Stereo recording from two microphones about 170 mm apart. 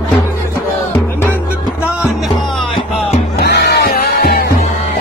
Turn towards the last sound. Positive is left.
turn(degrees=65)  # may be behind; listen again after turning